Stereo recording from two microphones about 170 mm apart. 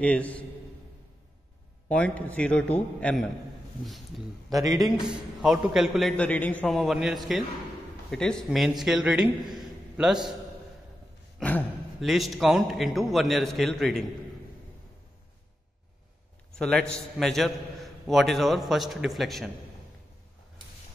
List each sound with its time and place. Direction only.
0.0 s a man's voice: 10° left (ahead or behind)
1.9 s a man's voice: 5° left (ahead or behind)
4.5 s a man's voice: 20° right (ahead or behind)
4.7 s a man's voice: centre (ahead or behind)
11.3 s speech: 5° left (ahead or behind)
16.5 s a man's voice: 5° left (ahead or behind)